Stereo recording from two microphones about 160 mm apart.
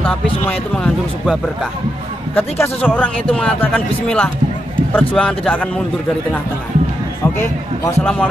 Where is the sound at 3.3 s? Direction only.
10° left (ahead or behind).